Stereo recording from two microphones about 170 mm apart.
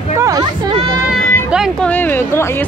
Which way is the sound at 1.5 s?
5° right (ahead or behind).